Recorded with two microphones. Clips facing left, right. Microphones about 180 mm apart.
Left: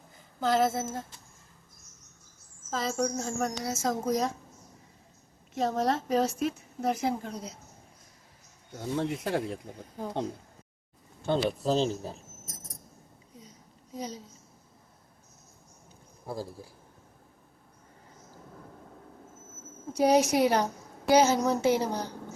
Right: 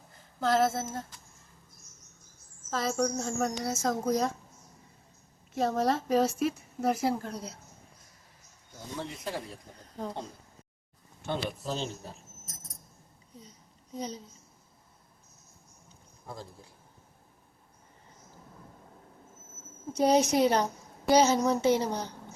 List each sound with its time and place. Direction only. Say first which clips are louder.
0.3 s a woman's voice: even; centre (ahead or behind)
2.6 s a woman's voice: right 1 dB; centre (ahead or behind)
5.5 s a woman's voice: even; centre (ahead or behind)
8.7 s speech: left 8 dB; 65° left (ahead or behind)
11.3 s speech: left 7 dB; 35° left (ahead or behind)
11.9 s a woman's voice: left 8 dB; centre (ahead or behind)
13.9 s a woman's voice: even; 5° left (ahead or behind)
16.2 s speech: left 7 dB; 30° left (ahead or behind)
20.3 s a woman's voice: even; 10° left (ahead or behind)